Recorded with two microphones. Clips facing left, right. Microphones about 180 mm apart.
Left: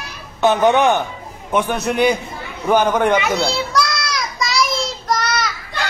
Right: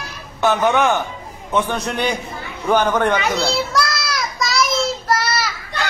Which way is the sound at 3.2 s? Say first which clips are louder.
Even; centre (ahead or behind).